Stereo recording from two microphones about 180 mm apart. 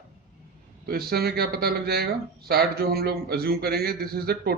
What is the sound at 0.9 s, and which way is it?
Speech, 60° right (ahead or behind).